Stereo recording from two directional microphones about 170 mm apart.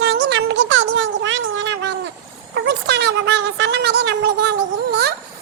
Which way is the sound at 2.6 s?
85° right.